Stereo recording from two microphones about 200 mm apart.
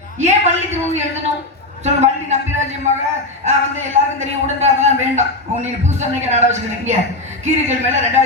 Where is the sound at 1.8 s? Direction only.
35° right (ahead or behind).